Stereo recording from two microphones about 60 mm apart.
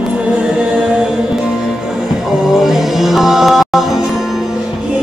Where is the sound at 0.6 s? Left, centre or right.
Centre.